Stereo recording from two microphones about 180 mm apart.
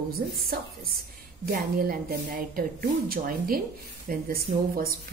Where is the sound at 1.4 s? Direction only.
55° right (ahead or behind).